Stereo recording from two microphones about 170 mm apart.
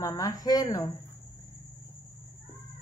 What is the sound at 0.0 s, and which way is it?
Speech, 20° left (ahead or behind).